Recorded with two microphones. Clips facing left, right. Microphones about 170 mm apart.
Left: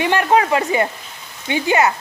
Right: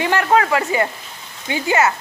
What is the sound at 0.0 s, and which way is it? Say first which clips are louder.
Speech: left 1 dB; 20° left (ahead or behind).